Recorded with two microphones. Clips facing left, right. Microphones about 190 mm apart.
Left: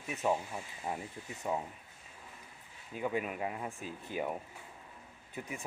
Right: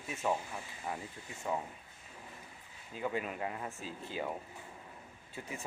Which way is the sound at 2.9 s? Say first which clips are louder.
Left 2 dB; 15° left (ahead or behind).